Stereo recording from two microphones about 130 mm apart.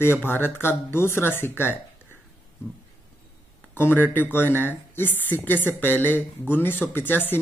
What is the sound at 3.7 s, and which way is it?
Speech, 15° left (ahead or behind).